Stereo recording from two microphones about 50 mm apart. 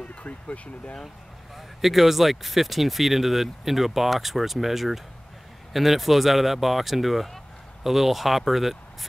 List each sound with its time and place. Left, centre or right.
0.0 s speech: left
0.9 s speech: centre